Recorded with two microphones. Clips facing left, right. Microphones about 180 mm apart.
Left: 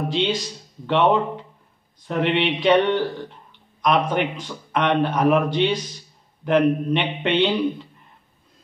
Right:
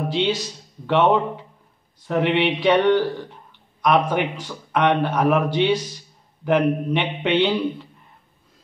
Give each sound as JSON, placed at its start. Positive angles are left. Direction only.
{"t": 0.1, "sound": "a man's voice", "side_deg": -5}
{"t": 3.8, "sound": "a man's voice", "side_deg": -5}